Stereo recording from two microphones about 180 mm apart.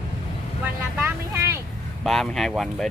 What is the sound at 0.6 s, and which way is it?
Vehicle, 10° right (ahead or behind).